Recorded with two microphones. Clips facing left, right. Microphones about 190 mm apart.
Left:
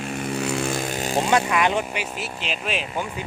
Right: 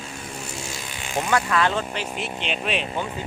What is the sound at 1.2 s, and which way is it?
Speech, 20° left (ahead or behind).